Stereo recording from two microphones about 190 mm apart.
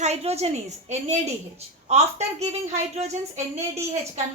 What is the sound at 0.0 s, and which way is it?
A woman's voice, 35° right (ahead or behind).